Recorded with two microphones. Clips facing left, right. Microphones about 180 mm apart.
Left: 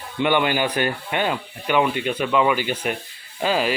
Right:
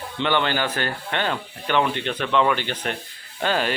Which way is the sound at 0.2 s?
10° left (ahead or behind).